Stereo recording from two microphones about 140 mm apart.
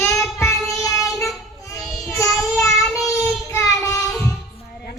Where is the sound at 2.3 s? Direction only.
Centre (ahead or behind).